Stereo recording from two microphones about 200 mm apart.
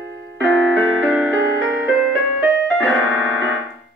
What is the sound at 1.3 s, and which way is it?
Piano, 10° right (ahead or behind).